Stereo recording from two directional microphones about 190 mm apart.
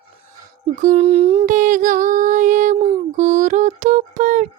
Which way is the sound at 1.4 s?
45° right (ahead or behind).